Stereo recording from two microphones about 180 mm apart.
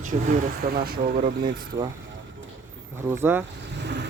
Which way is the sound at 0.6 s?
60° right (ahead or behind).